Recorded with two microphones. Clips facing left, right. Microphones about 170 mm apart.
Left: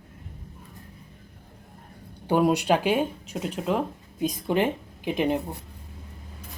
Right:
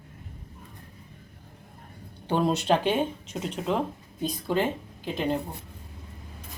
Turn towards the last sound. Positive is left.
turn(degrees=15)  # may be behind; listen again after turning